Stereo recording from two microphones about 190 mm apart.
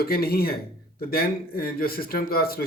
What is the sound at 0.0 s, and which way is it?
Speech, 50° left (ahead or behind).